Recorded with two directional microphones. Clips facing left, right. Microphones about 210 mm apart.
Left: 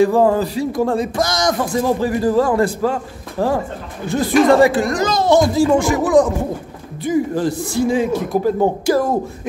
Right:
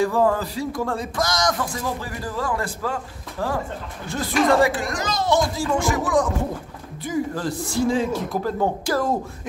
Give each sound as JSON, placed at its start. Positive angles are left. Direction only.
{"t": 0.0, "sound": "a man's voice", "side_deg": 25}
{"t": 4.8, "sound": "a child's voice", "side_deg": 45}
{"t": 5.1, "sound": "speech", "side_deg": 90}
{"t": 5.8, "sound": "speech", "side_deg": 30}
{"t": 7.1, "sound": "speech", "side_deg": 20}